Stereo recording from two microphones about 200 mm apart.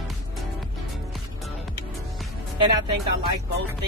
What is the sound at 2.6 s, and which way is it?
Speech, 25° right (ahead or behind).